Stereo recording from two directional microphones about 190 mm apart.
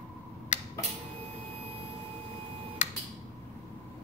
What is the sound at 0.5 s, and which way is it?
Tick-tock, 40° left (ahead or behind).